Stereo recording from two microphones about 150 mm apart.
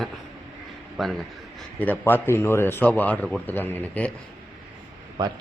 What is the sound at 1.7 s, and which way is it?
A man's voice, 10° left (ahead or behind).